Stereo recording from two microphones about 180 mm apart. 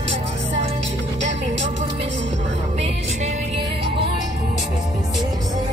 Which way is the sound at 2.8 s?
35° right (ahead or behind).